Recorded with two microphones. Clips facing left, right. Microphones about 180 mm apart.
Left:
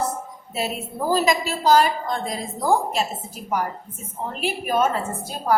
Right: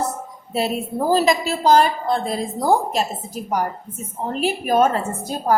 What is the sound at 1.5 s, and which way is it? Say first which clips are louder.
A woman's voice: right 2 dB; 30° right (ahead or behind).